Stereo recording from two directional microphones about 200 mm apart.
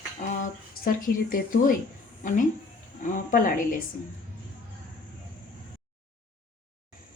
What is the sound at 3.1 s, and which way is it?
Speech, 45° left (ahead or behind).